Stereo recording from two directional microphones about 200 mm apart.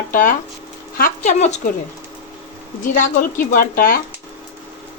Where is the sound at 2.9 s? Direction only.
45° left (ahead or behind).